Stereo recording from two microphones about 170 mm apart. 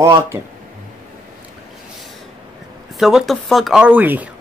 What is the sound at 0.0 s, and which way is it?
Speech, 15° right (ahead or behind).